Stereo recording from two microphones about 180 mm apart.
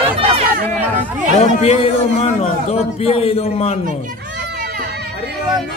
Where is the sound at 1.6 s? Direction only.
35° left (ahead or behind).